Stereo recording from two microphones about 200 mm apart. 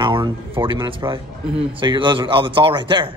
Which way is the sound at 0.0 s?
25° right (ahead or behind).